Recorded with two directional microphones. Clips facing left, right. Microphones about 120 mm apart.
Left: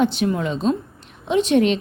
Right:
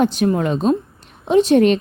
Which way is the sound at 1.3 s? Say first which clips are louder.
Right 4 dB; 40° right (ahead or behind).